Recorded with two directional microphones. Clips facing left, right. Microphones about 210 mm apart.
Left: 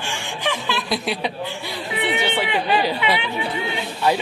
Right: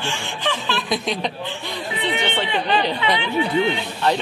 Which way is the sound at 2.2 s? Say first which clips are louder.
Left 1 dB; 10° left (ahead or behind).